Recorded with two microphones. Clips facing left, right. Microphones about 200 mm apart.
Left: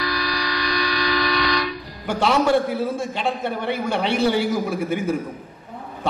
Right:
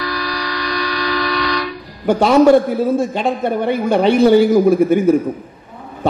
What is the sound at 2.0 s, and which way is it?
A man's voice, 40° right (ahead or behind).